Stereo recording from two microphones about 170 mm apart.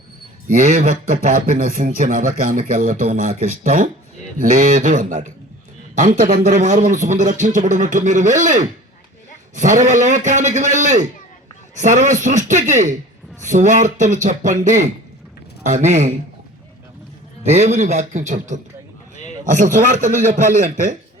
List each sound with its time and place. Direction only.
0.4 s a man's voice: 45° right (ahead or behind)
17.4 s a man's voice: 40° right (ahead or behind)